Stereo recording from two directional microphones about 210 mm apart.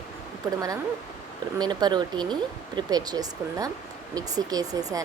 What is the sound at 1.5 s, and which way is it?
A woman's voice, 20° right (ahead or behind).